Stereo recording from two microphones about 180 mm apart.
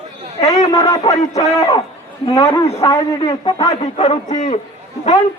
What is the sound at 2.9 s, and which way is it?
Speech, 20° left (ahead or behind).